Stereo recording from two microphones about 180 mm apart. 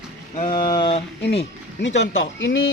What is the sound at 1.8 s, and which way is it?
Speech, 85° left.